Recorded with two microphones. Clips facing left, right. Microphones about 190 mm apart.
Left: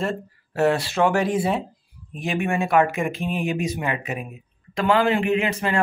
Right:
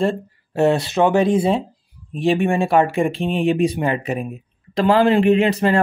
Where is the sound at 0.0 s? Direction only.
25° right (ahead or behind).